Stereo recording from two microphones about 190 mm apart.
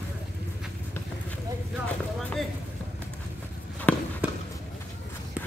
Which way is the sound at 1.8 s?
5° left (ahead or behind).